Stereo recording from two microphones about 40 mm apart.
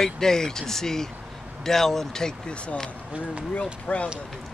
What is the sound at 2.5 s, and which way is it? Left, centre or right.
Speech, left.